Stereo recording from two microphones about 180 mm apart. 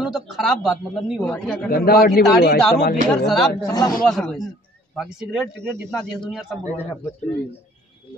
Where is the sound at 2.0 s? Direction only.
60° left (ahead or behind).